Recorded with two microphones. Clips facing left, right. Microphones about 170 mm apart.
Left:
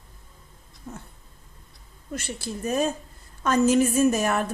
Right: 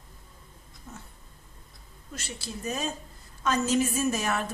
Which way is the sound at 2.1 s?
55° left (ahead or behind).